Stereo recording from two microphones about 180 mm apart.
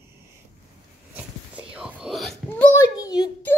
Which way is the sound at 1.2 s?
5° right (ahead or behind).